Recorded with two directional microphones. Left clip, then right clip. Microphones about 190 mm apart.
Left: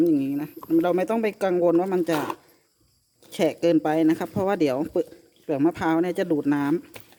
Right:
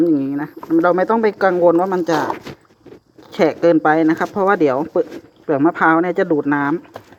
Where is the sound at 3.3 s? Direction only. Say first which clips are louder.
Right 7 dB; 20° left (ahead or behind).